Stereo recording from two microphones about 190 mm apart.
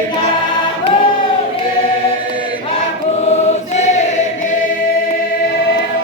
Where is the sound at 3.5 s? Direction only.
40° left (ahead or behind).